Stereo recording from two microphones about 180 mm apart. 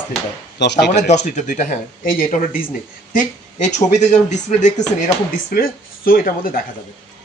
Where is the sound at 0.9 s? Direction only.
40° left (ahead or behind).